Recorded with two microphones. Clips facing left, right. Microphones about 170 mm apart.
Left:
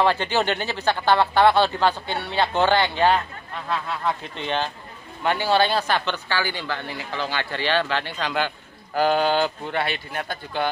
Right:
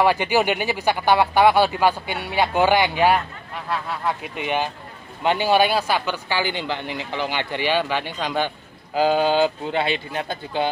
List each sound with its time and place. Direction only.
0.0 s speech: 10° right (ahead or behind)